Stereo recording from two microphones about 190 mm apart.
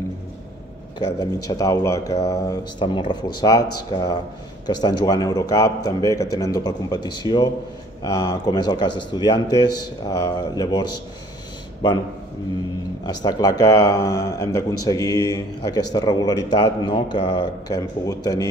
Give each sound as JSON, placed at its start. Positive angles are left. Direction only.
{"t": 0.9, "sound": "a man's voice", "side_deg": 20}
{"t": 13.0, "sound": "a man's voice", "side_deg": 20}